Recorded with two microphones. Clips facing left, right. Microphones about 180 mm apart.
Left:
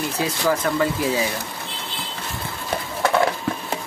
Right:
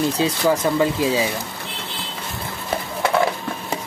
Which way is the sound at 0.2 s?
20° right (ahead or behind).